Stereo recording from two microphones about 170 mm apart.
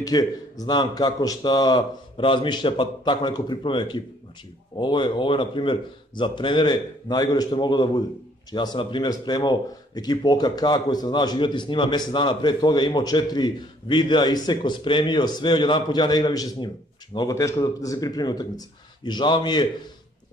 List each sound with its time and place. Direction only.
0.0 s speech: 20° left (ahead or behind)